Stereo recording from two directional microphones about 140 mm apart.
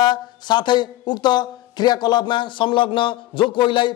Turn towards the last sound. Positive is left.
turn(degrees=35)  # may be behind; listen again after turning